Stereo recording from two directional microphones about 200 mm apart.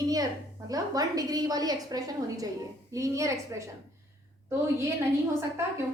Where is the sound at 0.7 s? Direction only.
20° right (ahead or behind).